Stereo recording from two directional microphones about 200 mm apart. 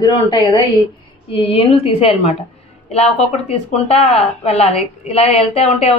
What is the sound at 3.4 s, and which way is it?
A woman's voice, 35° left (ahead or behind).